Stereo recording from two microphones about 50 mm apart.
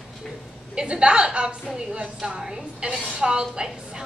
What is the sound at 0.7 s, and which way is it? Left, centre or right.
A woman's voice, centre.